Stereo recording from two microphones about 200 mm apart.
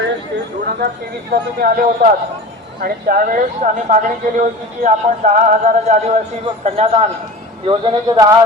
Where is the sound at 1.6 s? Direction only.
45° right (ahead or behind).